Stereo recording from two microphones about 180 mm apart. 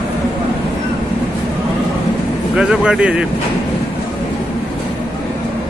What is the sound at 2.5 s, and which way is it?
Speech, 5° right (ahead or behind).